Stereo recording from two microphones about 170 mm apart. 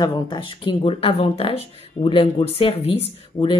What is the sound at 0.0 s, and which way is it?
Speech, 25° left (ahead or behind).